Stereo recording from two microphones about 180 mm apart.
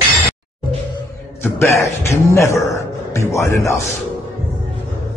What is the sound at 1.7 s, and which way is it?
Speech, 15° left (ahead or behind).